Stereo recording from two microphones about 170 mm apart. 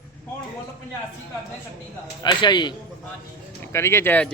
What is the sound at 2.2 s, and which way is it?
Speech, 25° left (ahead or behind).